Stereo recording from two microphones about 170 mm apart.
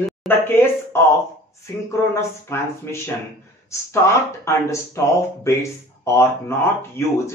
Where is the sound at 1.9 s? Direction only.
15° left (ahead or behind).